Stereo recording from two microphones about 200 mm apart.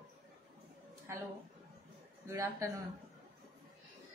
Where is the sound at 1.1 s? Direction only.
15° right (ahead or behind).